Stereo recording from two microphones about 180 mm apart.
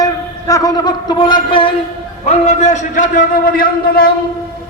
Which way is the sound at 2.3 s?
40° left (ahead or behind).